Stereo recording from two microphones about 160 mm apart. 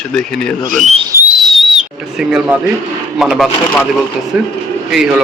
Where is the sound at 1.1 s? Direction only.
15° right (ahead or behind).